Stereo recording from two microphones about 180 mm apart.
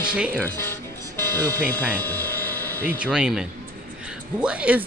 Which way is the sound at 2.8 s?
5° right (ahead or behind).